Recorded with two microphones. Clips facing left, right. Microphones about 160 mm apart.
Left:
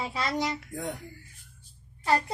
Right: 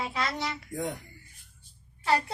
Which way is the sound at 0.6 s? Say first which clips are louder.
Right 2 dB; centre (ahead or behind).